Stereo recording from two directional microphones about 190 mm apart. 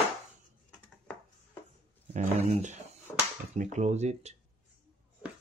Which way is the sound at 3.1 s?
10° left (ahead or behind).